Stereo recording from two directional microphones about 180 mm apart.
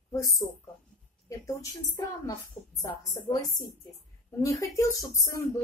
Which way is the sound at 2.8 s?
20° left (ahead or behind).